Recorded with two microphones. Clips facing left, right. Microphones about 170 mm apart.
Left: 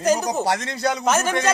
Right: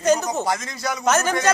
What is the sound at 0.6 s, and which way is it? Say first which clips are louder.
Speech: left 5 dB; 70° left (ahead or behind).